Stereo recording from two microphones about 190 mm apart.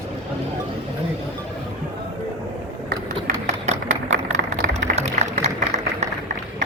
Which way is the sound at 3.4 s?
35° right (ahead or behind).